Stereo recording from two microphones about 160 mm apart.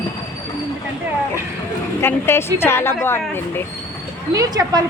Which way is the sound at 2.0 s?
15° left (ahead or behind).